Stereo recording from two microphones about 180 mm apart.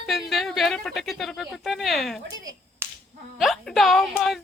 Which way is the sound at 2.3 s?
90° right.